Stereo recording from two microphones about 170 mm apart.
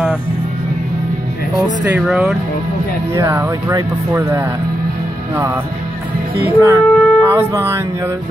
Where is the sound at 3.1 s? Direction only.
20° right (ahead or behind).